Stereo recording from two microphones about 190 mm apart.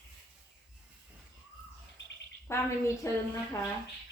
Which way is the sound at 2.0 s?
65° left (ahead or behind).